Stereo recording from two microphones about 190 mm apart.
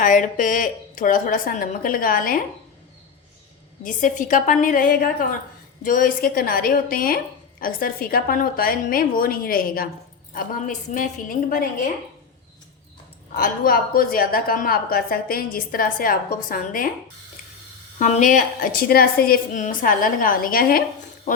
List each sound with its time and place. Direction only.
0.0 s a woman's voice: 45° left (ahead or behind)
3.8 s a woman's voice: 40° left (ahead or behind)
13.3 s a woman's voice: 50° left (ahead or behind)
18.0 s a woman's voice: 40° left (ahead or behind)